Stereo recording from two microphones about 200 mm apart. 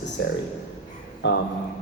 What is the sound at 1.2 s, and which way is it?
Speech, 60° left (ahead or behind).